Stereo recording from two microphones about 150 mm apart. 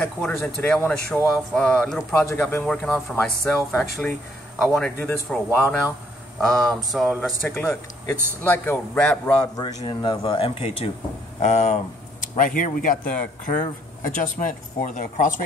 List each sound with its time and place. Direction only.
0.0 s a man's voice: 5° left (ahead or behind)
4.9 s a man's voice: 15° left (ahead or behind); by 7.3 s 5° right (ahead or behind)
7.4 s a man's voice: 15° left (ahead or behind)
9.8 s speech: 30° left (ahead or behind); by 15.3 s 60° left (ahead or behind)